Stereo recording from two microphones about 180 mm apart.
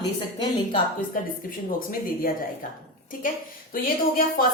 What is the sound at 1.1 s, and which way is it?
A woman's voice, 50° left (ahead or behind).